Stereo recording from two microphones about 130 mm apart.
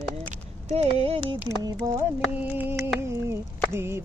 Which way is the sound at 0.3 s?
60° right (ahead or behind).